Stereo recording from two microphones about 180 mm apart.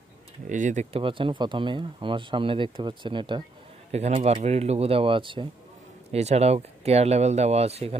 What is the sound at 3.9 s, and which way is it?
Speech, 35° right (ahead or behind).